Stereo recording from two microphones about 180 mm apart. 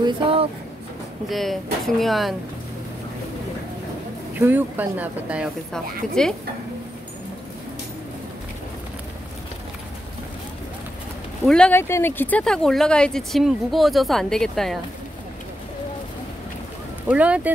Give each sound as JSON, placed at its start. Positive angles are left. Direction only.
{"t": 0.0, "sound": "a sound", "side_deg": -30}
{"t": 1.3, "sound": "speech", "side_deg": 0}
{"t": 4.4, "sound": "speech", "side_deg": -10}
{"t": 11.4, "sound": "speech", "side_deg": 5}
{"t": 17.1, "sound": "speech", "side_deg": -5}